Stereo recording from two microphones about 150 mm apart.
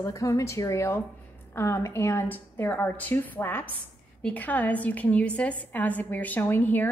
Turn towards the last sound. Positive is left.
turn(degrees=10)  # may be behind; listen again after turning